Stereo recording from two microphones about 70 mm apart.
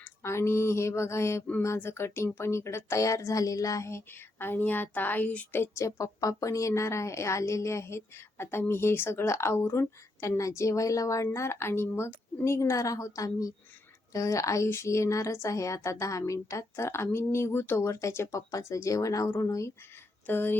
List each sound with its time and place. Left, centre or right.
0.2 s a woman's voice: left
5.5 s a woman's voice: left
11.3 s a woman's voice: left
20.2 s speech: left